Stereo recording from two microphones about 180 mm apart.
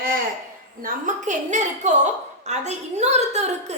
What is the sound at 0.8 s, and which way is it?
A woman's voice, 45° right (ahead or behind).